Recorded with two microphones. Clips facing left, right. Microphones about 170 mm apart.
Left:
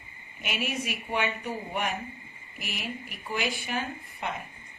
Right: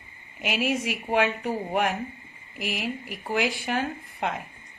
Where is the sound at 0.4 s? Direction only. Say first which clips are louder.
Right 6 dB; 85° right.